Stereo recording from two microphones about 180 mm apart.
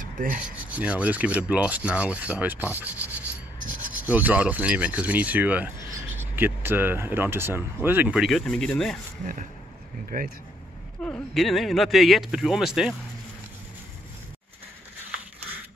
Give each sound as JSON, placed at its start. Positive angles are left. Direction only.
{"t": 0.0, "sound": "rub", "side_deg": -50}
{"t": 0.7, "sound": "speech", "side_deg": -10}
{"t": 9.2, "sound": "speech", "side_deg": -45}
{"t": 11.0, "sound": "speech", "side_deg": 10}